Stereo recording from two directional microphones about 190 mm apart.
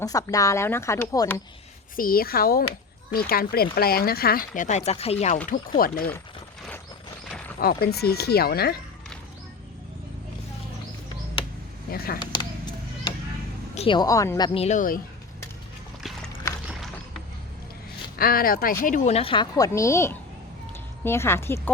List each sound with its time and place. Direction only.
0.0 s speech: 20° left (ahead or behind)
2.0 s speech: 50° left (ahead or behind); by 5.4 s 35° left (ahead or behind)
5.5 s speech: 50° left (ahead or behind)
7.6 s speech: 55° left (ahead or behind)
11.9 s speech: 50° left (ahead or behind)
13.7 s speech: 25° left (ahead or behind)
14.6 s speech: 40° left (ahead or behind)
18.2 s a woman's voice: 50° left (ahead or behind); by 21.7 s 15° left (ahead or behind)